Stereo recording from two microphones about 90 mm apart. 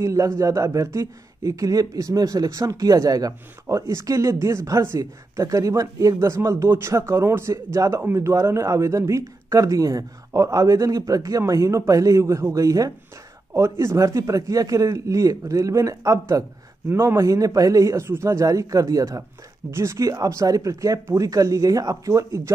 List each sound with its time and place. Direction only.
0.0 s speech: 35° right (ahead or behind)